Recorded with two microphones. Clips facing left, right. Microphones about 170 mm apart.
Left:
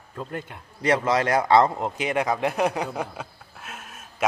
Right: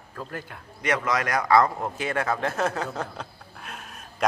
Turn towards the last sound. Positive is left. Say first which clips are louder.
# even
turn(degrees=0)  # may be behind; listen again after turning